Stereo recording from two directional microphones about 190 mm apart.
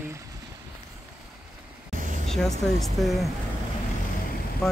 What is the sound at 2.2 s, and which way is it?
Speech, centre (ahead or behind).